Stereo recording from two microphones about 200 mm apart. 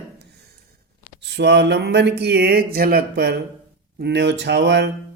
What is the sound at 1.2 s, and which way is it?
Speech, 60° right (ahead or behind).